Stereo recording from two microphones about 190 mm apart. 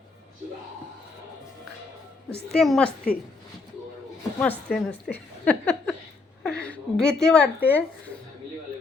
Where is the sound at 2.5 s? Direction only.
Centre (ahead or behind).